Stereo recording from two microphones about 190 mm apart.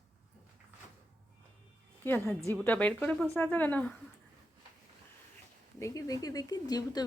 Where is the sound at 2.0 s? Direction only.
10° left (ahead or behind).